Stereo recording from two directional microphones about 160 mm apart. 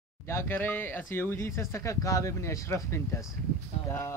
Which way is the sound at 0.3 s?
15° left (ahead or behind).